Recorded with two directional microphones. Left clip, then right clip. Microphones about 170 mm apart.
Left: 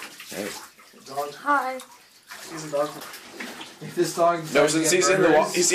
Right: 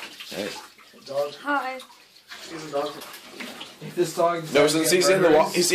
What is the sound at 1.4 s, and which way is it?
Speech, 5° left (ahead or behind).